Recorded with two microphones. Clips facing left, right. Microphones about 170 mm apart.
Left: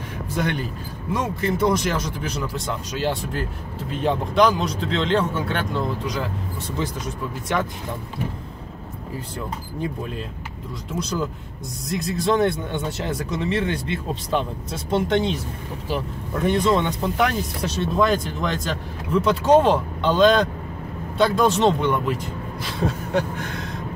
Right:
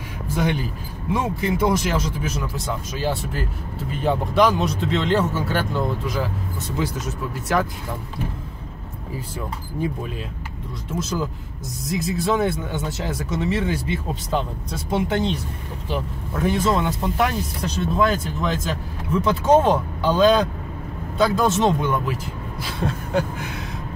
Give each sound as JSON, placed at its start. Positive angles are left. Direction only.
{"t": 0.4, "sound": "speech", "side_deg": -10}
{"t": 10.9, "sound": "speech", "side_deg": 0}